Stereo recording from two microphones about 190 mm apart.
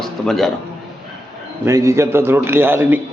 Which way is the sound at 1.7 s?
15° right (ahead or behind).